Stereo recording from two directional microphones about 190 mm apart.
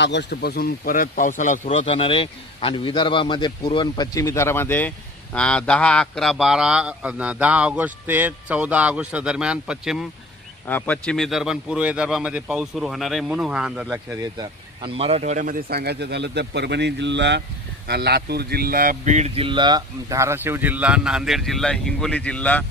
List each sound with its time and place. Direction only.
0.0 s a man's voice: 65° left (ahead or behind); by 13.8 s 5° right (ahead or behind)
13.8 s speech: 20° right (ahead or behind); by 22.7 s 5° left (ahead or behind)